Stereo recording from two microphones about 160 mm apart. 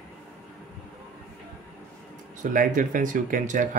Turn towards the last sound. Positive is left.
turn(degrees=-55)  # may be behind; listen again after turning